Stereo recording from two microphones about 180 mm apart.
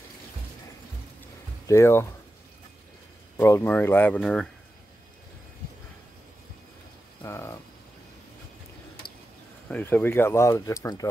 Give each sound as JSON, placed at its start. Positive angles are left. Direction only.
{"t": 1.7, "sound": "speech", "side_deg": 15}
{"t": 3.3, "sound": "speech", "side_deg": 15}
{"t": 7.2, "sound": "a sound", "side_deg": 15}
{"t": 9.7, "sound": "speech", "side_deg": 10}